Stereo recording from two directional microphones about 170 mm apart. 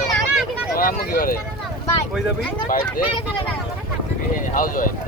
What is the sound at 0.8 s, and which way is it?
Vehicle, 60° left (ahead or behind).